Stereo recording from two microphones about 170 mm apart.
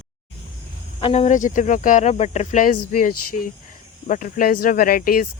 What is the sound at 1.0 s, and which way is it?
Speech, 35° left (ahead or behind).